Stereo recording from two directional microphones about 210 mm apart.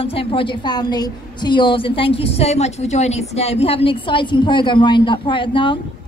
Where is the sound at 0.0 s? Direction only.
25° left (ahead or behind).